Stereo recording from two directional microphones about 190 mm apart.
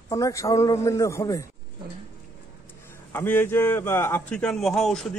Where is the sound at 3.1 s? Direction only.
10° left (ahead or behind).